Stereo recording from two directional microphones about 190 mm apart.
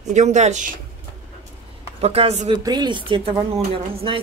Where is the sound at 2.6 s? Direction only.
20° right (ahead or behind).